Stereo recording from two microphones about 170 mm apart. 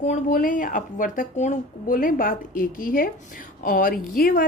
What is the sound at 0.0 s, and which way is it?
A woman's voice, 50° left (ahead or behind).